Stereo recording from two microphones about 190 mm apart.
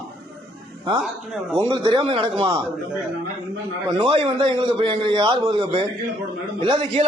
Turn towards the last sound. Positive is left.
turn(degrees=-30)  # may be behind; listen again after turning